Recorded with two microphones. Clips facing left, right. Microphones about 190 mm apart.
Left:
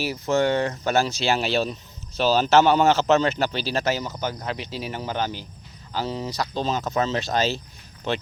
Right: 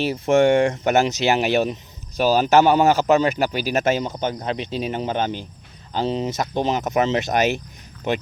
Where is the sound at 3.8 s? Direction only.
25° right (ahead or behind).